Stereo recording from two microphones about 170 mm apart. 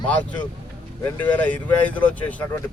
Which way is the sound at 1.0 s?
10° left (ahead or behind).